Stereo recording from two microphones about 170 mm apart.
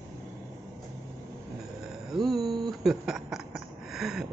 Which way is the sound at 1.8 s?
Centre (ahead or behind).